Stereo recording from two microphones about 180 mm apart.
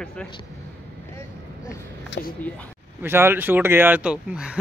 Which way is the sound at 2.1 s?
75° left (ahead or behind).